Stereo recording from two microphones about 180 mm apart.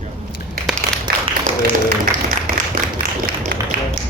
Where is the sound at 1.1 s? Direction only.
55° right (ahead or behind).